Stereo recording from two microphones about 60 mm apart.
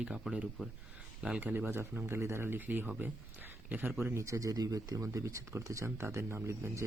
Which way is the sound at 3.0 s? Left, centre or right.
Right.